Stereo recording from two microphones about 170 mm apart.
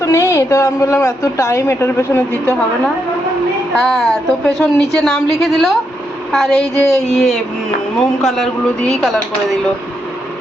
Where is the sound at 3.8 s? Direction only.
Centre (ahead or behind).